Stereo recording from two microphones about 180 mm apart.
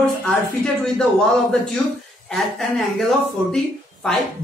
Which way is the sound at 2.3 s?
Centre (ahead or behind).